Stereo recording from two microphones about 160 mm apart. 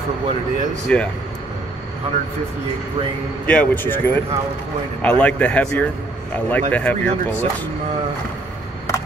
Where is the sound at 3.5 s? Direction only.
10° left (ahead or behind).